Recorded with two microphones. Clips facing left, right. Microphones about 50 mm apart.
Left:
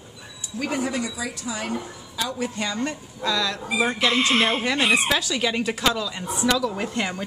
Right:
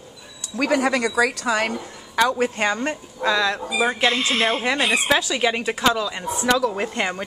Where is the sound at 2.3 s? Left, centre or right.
Right.